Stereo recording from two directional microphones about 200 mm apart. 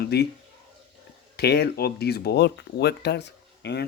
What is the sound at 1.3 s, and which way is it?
Speech, 55° left (ahead or behind).